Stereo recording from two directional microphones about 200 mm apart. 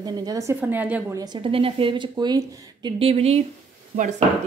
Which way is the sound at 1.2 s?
25° right (ahead or behind).